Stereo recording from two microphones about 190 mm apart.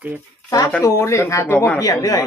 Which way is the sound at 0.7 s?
15° left (ahead or behind).